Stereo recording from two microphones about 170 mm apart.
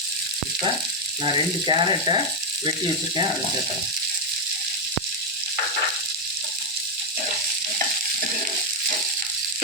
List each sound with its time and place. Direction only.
1.2 s speech: 30° right (ahead or behind)